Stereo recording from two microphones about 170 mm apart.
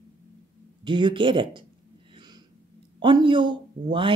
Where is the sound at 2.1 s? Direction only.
25° right (ahead or behind).